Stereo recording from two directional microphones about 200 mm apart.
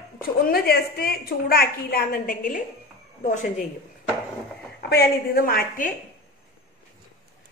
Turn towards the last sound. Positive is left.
turn(degrees=45)  # may be behind; listen again after turning